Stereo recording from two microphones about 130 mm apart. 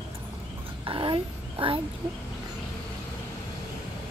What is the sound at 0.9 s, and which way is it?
Speech, 40° right (ahead or behind).